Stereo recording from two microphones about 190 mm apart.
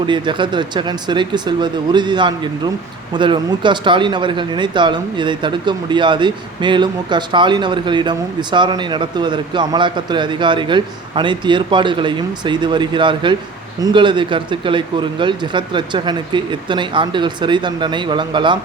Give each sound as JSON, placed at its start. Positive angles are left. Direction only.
{"t": 0.0, "sound": "speech", "side_deg": -25}